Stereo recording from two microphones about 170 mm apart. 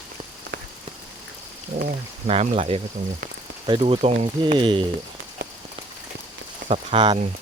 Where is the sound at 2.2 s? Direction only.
40° right (ahead or behind).